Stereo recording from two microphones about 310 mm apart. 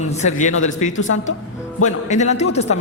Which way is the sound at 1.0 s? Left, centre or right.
Left.